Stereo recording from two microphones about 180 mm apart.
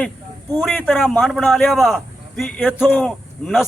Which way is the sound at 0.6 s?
5° left (ahead or behind).